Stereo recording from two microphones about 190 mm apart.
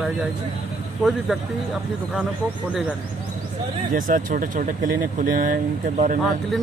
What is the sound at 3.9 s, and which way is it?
Speech, 45° right (ahead or behind).